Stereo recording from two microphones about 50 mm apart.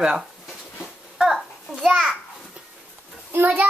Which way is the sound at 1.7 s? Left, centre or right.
Centre.